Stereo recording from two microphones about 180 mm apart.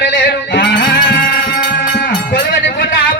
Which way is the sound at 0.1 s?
55° left (ahead or behind).